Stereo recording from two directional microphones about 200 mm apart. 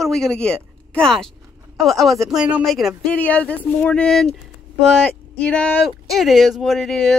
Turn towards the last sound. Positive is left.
turn(degrees=0)  # may be behind; listen again after turning